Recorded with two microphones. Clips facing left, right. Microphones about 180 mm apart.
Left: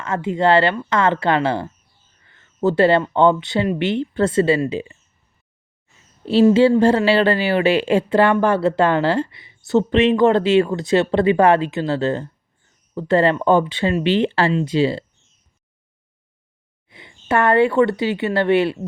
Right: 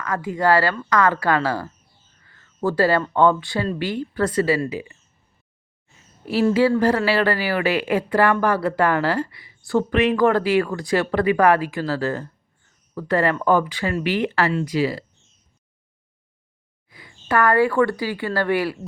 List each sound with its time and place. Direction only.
0.0 s a woman's voice: 25° left (ahead or behind)
6.2 s a woman's voice: 25° left (ahead or behind)
16.9 s speech: 25° left (ahead or behind)